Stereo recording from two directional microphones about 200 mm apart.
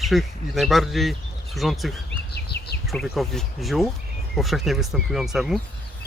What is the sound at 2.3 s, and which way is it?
Bird, 55° left (ahead or behind).